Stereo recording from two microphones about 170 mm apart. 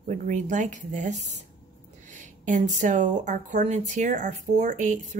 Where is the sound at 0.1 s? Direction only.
45° right (ahead or behind).